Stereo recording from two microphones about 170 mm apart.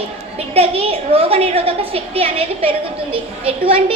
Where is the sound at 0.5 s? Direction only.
35° right (ahead or behind).